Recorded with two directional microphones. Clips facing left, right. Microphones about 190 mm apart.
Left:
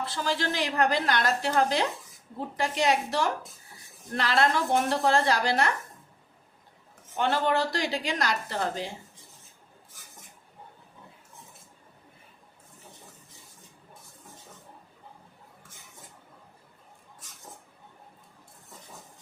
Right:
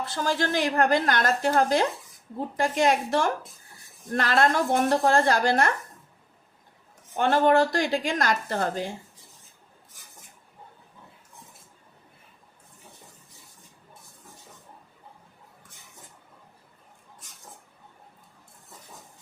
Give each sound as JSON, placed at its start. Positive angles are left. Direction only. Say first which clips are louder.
{"t": 0.0, "sound": "a woman's voice", "louder": "right 3 dB", "side_deg": -45}
{"t": 7.2, "sound": "a woman's voice", "louder": "right 6 dB", "side_deg": -50}